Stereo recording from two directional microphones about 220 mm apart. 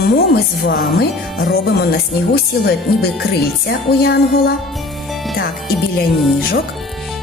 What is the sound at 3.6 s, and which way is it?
Speech, 45° left (ahead or behind).